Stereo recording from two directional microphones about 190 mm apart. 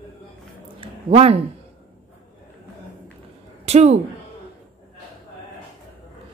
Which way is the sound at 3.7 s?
35° right (ahead or behind).